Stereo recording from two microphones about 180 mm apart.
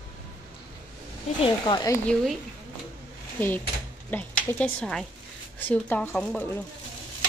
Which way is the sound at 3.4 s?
10° left (ahead or behind).